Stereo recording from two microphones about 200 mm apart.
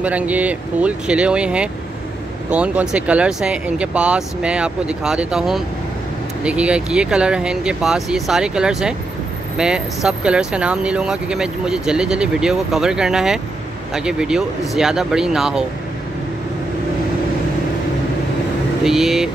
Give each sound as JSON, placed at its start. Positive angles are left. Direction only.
{"t": 0.0, "sound": "speech", "side_deg": -5}
{"t": 18.9, "sound": "speech", "side_deg": 0}